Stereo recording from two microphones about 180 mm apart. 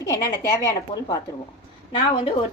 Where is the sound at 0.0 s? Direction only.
15° left (ahead or behind).